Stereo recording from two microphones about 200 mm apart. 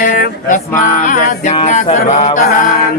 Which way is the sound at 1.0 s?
40° left (ahead or behind).